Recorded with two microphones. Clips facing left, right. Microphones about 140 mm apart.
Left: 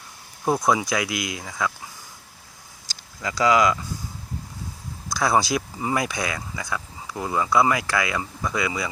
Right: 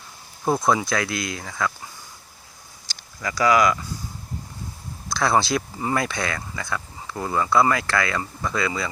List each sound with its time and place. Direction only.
0.4 s speech: 10° left (ahead or behind)
3.2 s speech: 20° left (ahead or behind)
5.1 s speech: 10° left (ahead or behind)